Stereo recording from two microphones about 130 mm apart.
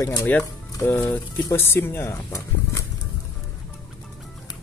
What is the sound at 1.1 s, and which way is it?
Speech, 20° left (ahead or behind).